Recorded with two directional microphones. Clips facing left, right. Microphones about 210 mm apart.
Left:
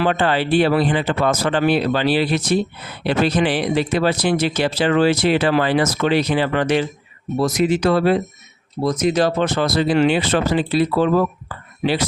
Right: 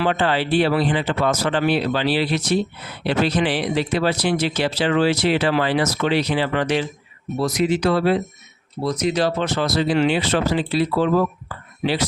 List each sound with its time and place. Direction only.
0.0 s speech: 50° left (ahead or behind)